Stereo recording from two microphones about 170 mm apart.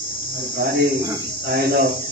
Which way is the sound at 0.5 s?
65° right (ahead or behind).